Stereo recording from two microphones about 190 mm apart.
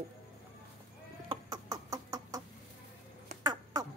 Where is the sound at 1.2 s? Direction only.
20° right (ahead or behind).